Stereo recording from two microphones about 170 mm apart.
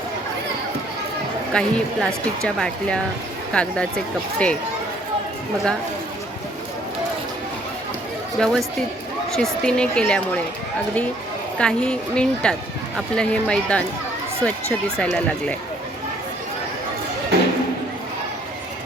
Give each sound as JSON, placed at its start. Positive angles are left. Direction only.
{"t": 1.5, "sound": "speech", "side_deg": 5}
{"t": 8.4, "sound": "speech", "side_deg": 5}
{"t": 11.5, "sound": "speech", "side_deg": 5}
{"t": 17.3, "sound": "a sound", "side_deg": -75}